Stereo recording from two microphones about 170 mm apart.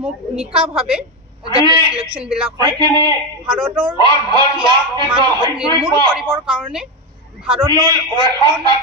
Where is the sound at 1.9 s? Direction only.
35° right (ahead or behind).